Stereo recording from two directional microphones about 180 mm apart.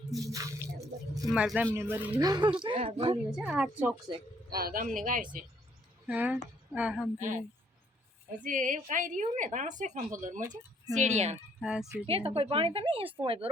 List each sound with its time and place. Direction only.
0.3 s squish: 20° right (ahead or behind)
1.3 s speech: 5° right (ahead or behind); by 3.2 s 30° right (ahead or behind)
3.2 s a woman's voice: 5° right (ahead or behind)
4.4 s a woman's voice: 55° right (ahead or behind)
6.1 s speech: 5° right (ahead or behind)
8.4 s a woman's voice: 45° right (ahead or behind)
10.4 s speech: 20° right (ahead or behind)
10.9 s a woman's voice: 40° right (ahead or behind)
11.6 s a woman's voice: 5° right (ahead or behind)
12.0 s a woman's voice: 30° right (ahead or behind)